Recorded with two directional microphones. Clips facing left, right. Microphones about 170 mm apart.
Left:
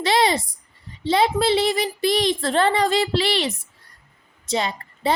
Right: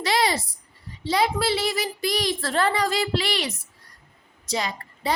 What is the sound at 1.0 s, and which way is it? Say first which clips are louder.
A woman's voice: left 4 dB; 25° left (ahead or behind).